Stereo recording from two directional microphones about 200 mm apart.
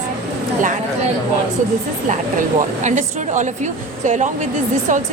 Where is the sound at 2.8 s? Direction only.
35° right (ahead or behind).